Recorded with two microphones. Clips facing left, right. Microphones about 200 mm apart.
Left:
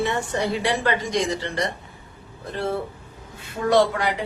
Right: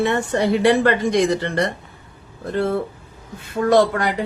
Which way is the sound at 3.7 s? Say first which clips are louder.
Right 3 dB; 50° right (ahead or behind).